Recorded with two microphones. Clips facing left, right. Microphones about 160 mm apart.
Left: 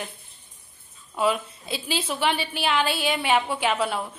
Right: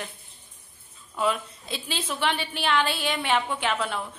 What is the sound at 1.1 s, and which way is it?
A woman's voice, 10° left (ahead or behind).